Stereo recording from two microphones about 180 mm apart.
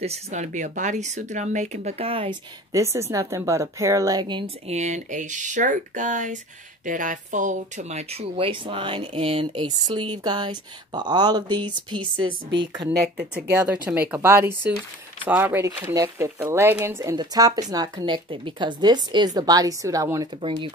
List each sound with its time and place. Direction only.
0.0 s speech: 40° right (ahead or behind)
2.7 s a woman's voice: 15° right (ahead or behind)
4.7 s speech: 40° right (ahead or behind); by 12.9 s 25° right (ahead or behind)
13.5 s a woman's voice: 10° right (ahead or behind); by 20.7 s 30° right (ahead or behind)